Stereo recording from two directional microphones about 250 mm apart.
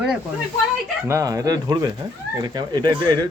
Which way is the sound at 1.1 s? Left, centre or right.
Centre.